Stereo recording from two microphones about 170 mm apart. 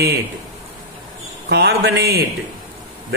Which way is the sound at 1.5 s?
80° right.